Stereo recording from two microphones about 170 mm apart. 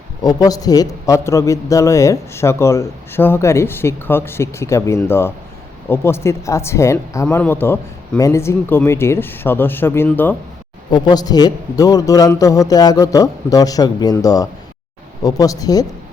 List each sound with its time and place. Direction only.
0.2 s a man's voice: 20° left (ahead or behind)
10.9 s a man's voice: 25° left (ahead or behind)